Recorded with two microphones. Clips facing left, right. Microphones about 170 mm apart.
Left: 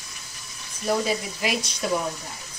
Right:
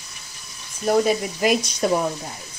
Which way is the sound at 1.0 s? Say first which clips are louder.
Right 6 dB; 45° right (ahead or behind).